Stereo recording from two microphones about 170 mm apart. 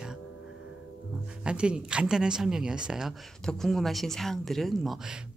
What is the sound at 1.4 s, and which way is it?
Speech, 5° right (ahead or behind).